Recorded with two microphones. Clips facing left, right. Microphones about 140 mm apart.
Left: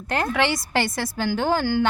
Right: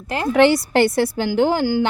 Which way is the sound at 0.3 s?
35° right (ahead or behind).